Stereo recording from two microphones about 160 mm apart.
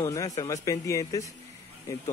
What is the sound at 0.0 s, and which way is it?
Speech, 20° left (ahead or behind).